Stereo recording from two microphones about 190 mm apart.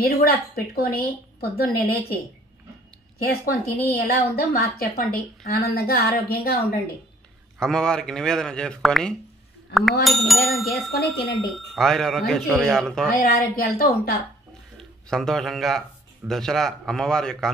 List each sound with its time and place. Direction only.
0.0 s a woman's voice: 55° left (ahead or behind)
3.2 s a woman's voice: 50° left (ahead or behind)
7.5 s speech: 5° left (ahead or behind)
13.2 s a woman's voice: 50° left (ahead or behind)
14.8 s speech: centre (ahead or behind)